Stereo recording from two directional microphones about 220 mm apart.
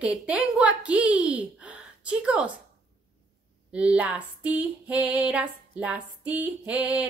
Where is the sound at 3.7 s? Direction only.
5° right (ahead or behind).